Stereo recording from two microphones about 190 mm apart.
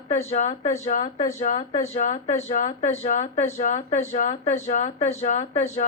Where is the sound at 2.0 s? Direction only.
35° left (ahead or behind).